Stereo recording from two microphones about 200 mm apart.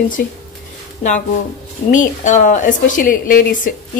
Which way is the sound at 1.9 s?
40° left (ahead or behind).